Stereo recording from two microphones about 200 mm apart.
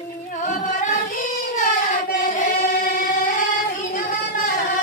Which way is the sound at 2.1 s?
40° left (ahead or behind).